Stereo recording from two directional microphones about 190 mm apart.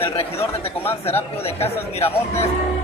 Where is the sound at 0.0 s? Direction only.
30° left (ahead or behind).